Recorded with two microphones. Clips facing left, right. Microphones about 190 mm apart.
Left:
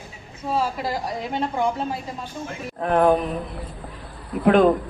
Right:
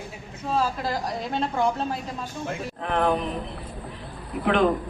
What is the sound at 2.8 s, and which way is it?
Speech, 45° left (ahead or behind).